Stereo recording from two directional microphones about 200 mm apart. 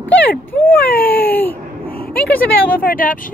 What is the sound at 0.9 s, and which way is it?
Speech, 50° left (ahead or behind).